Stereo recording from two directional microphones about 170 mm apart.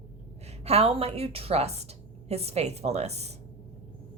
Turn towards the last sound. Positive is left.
turn(degrees=-40)  # may be behind; listen again after turning